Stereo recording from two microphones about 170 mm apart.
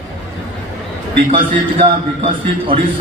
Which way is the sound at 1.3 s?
30° right (ahead or behind).